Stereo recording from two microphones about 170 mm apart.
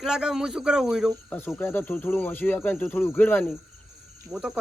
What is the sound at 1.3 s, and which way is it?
Speech, 10° left (ahead or behind).